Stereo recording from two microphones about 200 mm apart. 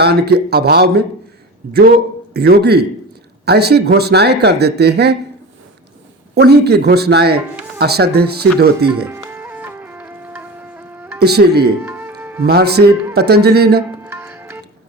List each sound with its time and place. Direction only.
0.0 s speech: 55° right (ahead or behind)
2.3 s speech: 50° right (ahead or behind)
6.3 s speech: 55° right (ahead or behind)
9.0 s music: 10° right (ahead or behind)
11.2 s speech: 55° right (ahead or behind)
11.8 s music: 10° right (ahead or behind)
12.5 s speech: 55° right (ahead or behind)
14.0 s music: 10° right (ahead or behind)